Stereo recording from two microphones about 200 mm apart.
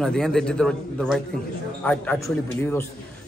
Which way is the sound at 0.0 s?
5° left (ahead or behind).